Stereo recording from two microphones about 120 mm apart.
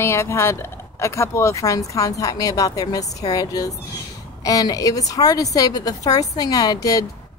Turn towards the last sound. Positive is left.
turn(degrees=30)  # may be behind; listen again after turning